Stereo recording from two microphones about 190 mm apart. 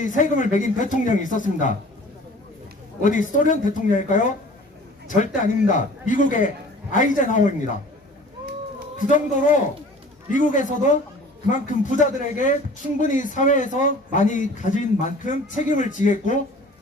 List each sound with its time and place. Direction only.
0.0 s a man's voice: 40° left (ahead or behind)
3.0 s a man's voice: 40° left (ahead or behind)
8.9 s a sound: 45° left (ahead or behind)
10.3 s a man's voice: 40° left (ahead or behind)